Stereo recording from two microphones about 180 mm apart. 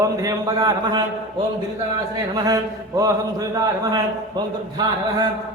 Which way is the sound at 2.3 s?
20° right (ahead or behind).